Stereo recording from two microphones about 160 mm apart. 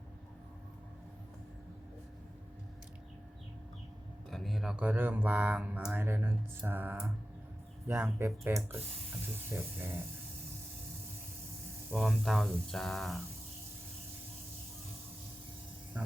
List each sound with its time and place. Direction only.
4.3 s speech: centre (ahead or behind); by 10.0 s 15° right (ahead or behind)
11.9 s speech: centre (ahead or behind)